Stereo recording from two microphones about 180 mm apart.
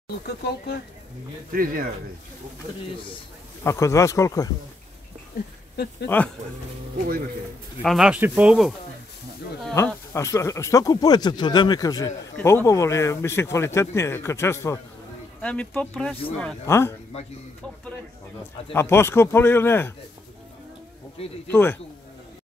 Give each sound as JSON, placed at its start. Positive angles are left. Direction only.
{"t": 1.5, "sound": "speech", "side_deg": -55}
{"t": 3.6, "sound": "speech", "side_deg": 15}
{"t": 6.0, "sound": "speech", "side_deg": 10}
{"t": 7.8, "sound": "speech", "side_deg": 0}
{"t": 9.8, "sound": "speech", "side_deg": 15}
{"t": 18.7, "sound": "speech", "side_deg": 15}
{"t": 21.5, "sound": "speech", "side_deg": 10}